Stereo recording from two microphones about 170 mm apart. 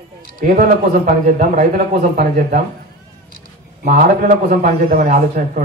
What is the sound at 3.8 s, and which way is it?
A man's voice, 50° right (ahead or behind).